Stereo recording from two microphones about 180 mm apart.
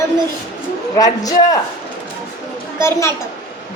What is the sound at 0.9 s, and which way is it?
Speech, 20° left (ahead or behind).